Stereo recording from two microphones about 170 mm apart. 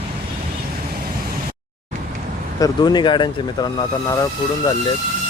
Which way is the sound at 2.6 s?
25° left (ahead or behind).